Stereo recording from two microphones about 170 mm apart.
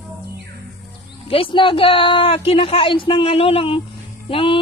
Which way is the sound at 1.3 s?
30° left (ahead or behind).